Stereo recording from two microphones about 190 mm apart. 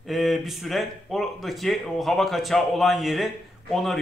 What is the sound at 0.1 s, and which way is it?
A man's voice, centre (ahead or behind).